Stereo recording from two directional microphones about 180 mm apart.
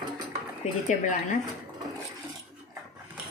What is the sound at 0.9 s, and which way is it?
Speech, 45° left (ahead or behind).